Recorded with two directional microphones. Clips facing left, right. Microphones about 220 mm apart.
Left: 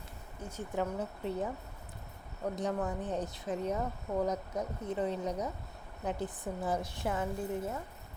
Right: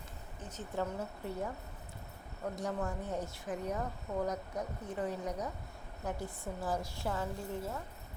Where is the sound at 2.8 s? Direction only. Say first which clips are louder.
Left 3 dB; 20° left (ahead or behind).